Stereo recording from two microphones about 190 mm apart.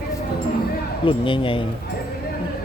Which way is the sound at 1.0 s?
25° left (ahead or behind).